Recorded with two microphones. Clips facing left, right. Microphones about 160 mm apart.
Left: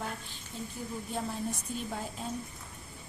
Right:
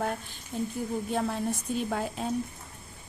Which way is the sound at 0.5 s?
55° right (ahead or behind).